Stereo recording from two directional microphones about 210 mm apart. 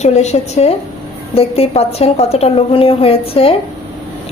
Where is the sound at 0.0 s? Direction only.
30° left (ahead or behind).